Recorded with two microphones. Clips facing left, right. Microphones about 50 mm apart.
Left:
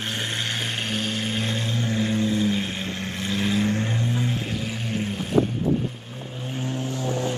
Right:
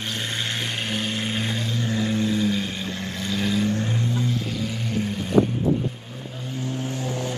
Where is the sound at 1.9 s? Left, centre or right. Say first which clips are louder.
Even; left.